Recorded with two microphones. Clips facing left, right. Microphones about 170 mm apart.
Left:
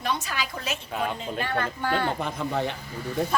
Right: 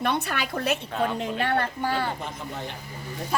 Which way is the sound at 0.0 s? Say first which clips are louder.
Right 3 dB; 60° right (ahead or behind).